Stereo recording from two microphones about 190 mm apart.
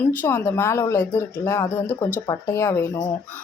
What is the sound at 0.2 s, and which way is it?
Speech, 10° left (ahead or behind).